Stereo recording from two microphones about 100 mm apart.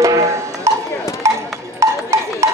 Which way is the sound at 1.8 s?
30° right (ahead or behind).